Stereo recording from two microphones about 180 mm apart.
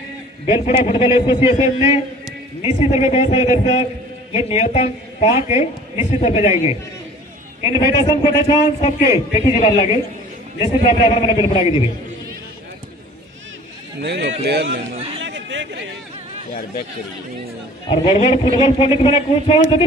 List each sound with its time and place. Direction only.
0.7 s a man's voice: 35° left (ahead or behind)
7.6 s a man's voice: 25° left (ahead or behind)
14.0 s speech: 70° right (ahead or behind)
15.1 s chatter: 90° right
17.8 s a man's voice: 35° left (ahead or behind)